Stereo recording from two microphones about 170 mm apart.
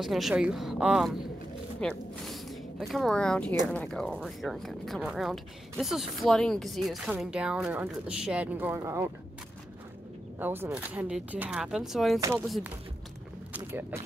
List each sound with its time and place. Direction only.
0.0 s speech: centre (ahead or behind)
10.4 s speech: 10° right (ahead or behind)
13.6 s speech: 15° right (ahead or behind)